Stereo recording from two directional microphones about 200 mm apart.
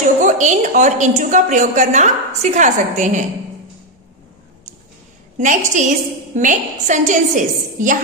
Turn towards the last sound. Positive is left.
turn(degrees=-40)  # may be behind; listen again after turning